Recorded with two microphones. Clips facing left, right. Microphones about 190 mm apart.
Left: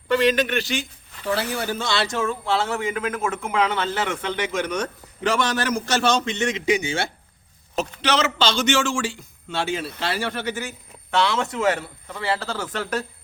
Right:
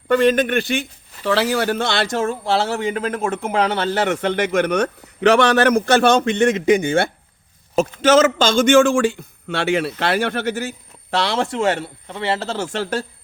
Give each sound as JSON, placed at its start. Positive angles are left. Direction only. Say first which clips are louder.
{"t": 0.1, "sound": "a man's voice", "louder": "right 4 dB", "side_deg": -50}
{"t": 1.2, "sound": "speech", "louder": "right 7 dB", "side_deg": -90}
{"t": 4.0, "sound": "a man's voice", "louder": "right 7 dB", "side_deg": -60}